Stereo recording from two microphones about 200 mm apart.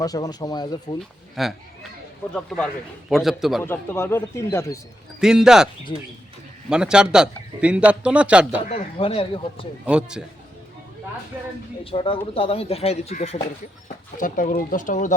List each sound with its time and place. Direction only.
0.0 s speech: 20° left (ahead or behind)
0.9 s a man's voice: centre (ahead or behind)
3.6 s speech: 10° left (ahead or behind)
5.2 s a man's voice: 5° right (ahead or behind)
6.7 s a man's voice: 5° right (ahead or behind)
8.6 s speech: 30° left (ahead or behind)
9.8 s a man's voice: 5° right (ahead or behind)
11.9 s speech: 25° left (ahead or behind)